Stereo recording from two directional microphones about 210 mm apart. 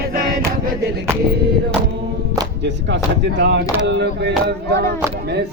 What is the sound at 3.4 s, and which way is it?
Speech, 50° right (ahead or behind).